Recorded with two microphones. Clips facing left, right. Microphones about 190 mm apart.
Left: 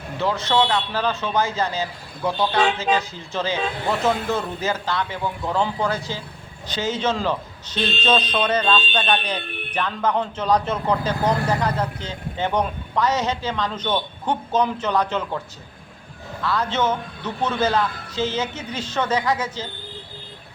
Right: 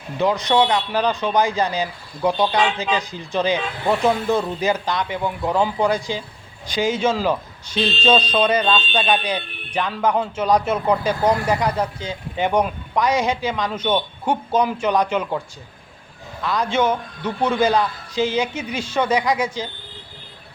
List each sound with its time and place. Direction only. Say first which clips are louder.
0.2 s speech: right 3 dB; 15° right (ahead or behind)
16.4 s speech: right 2 dB; 15° right (ahead or behind)